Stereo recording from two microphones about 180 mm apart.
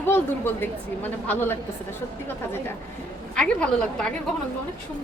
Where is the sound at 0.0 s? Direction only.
10° left (ahead or behind).